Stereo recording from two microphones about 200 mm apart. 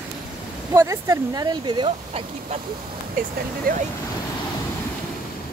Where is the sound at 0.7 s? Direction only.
15° right (ahead or behind).